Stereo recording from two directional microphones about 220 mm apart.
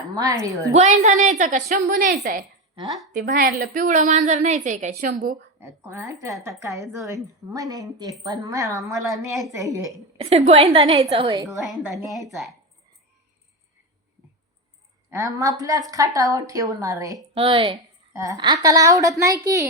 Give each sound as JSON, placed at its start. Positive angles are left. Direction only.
{"t": 0.1, "sound": "a woman's voice", "side_deg": -15}
{"t": 0.7, "sound": "a woman's voice", "side_deg": -35}
{"t": 5.5, "sound": "a woman's voice", "side_deg": -10}
{"t": 9.0, "sound": "a woman's voice", "side_deg": 0}
{"t": 9.6, "sound": "a woman's voice", "side_deg": -15}
{"t": 10.2, "sound": "a woman's voice", "side_deg": -30}
{"t": 11.6, "sound": "a woman's voice", "side_deg": 0}
{"t": 15.1, "sound": "a woman's voice", "side_deg": -15}